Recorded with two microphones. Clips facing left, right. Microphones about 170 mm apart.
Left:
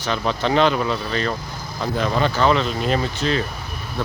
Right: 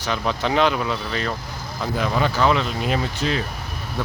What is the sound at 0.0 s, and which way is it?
Speech, 10° right (ahead or behind).